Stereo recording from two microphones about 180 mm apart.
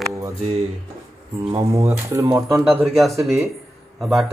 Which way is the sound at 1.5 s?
20° right (ahead or behind).